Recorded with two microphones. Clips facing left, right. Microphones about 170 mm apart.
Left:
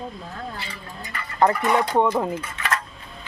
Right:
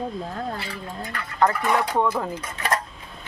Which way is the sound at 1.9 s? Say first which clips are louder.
Left 3 dB; 20° left (ahead or behind).